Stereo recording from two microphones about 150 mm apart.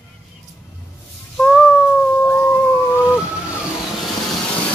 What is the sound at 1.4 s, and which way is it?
Cat, 15° left (ahead or behind).